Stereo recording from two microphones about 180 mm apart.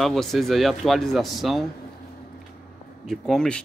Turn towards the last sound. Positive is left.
turn(degrees=5)  # may be behind; listen again after turning